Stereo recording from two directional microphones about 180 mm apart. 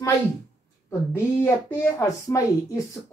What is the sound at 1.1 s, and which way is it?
A woman's voice, 15° left (ahead or behind).